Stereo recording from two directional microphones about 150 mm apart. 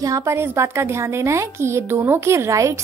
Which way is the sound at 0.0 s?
20° right (ahead or behind).